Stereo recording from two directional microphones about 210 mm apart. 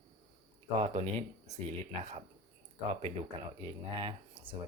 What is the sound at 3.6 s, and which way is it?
Speech, 25° right (ahead or behind).